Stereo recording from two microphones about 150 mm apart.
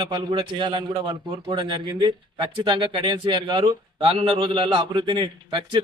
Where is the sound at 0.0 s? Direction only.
30° right (ahead or behind).